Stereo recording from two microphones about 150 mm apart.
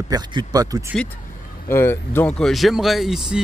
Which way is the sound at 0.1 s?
30° right (ahead or behind).